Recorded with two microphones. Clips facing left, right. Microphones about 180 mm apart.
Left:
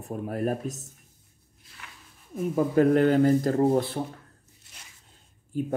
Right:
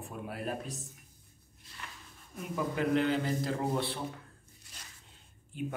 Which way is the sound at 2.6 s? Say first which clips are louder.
Left 9 dB; 45° left (ahead or behind).